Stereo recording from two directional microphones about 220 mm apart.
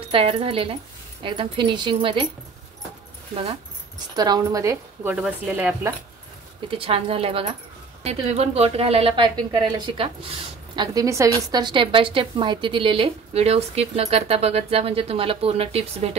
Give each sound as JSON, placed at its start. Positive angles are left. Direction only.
{"t": 0.1, "sound": "a woman's voice", "side_deg": -25}
{"t": 4.1, "sound": "a woman's voice", "side_deg": -15}
{"t": 6.8, "sound": "a woman's voice", "side_deg": -25}